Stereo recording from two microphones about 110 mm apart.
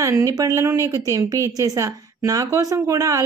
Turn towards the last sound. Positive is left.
turn(degrees=-30)  # may be behind; listen again after turning